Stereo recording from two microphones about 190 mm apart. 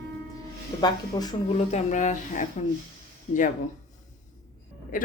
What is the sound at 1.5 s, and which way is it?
Speech, 40° left (ahead or behind).